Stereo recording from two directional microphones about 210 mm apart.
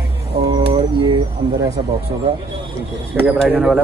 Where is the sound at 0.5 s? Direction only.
25° right (ahead or behind).